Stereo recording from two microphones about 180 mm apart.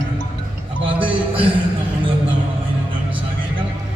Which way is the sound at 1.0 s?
30° right (ahead or behind).